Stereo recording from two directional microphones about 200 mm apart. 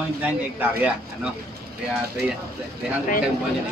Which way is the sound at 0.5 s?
5° right (ahead or behind).